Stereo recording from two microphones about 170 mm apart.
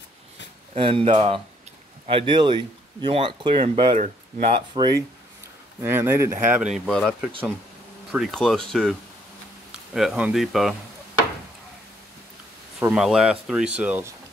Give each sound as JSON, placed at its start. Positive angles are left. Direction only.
{"t": 0.7, "sound": "speech", "side_deg": -30}
{"t": 5.8, "sound": "speech", "side_deg": -15}
{"t": 6.9, "sound": "speech", "side_deg": 5}
{"t": 9.9, "sound": "speech", "side_deg": -5}
{"t": 12.8, "sound": "speech", "side_deg": -5}